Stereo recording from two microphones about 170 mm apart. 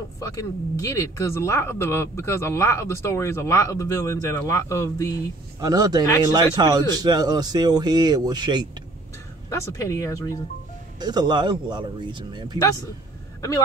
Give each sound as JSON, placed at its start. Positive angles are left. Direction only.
{"t": 0.2, "sound": "speech", "side_deg": 20}
{"t": 5.6, "sound": "speech", "side_deg": -20}
{"t": 9.5, "sound": "speech", "side_deg": 15}
{"t": 11.0, "sound": "speech", "side_deg": -25}